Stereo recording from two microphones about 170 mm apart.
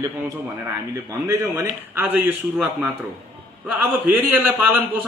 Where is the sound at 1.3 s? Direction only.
20° right (ahead or behind).